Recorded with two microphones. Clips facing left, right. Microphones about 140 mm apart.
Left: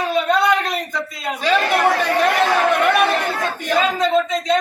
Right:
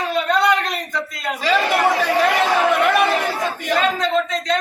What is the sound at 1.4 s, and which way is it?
Chatter, centre (ahead or behind).